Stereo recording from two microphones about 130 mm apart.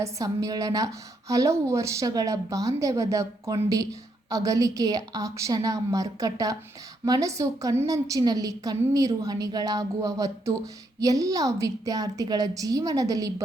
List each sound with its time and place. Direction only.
0.0 s a woman's voice: 25° right (ahead or behind)